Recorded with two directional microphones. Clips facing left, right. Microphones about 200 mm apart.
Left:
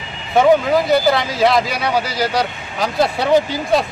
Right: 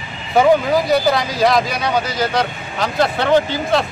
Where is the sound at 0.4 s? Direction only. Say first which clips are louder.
Left 1 dB; centre (ahead or behind).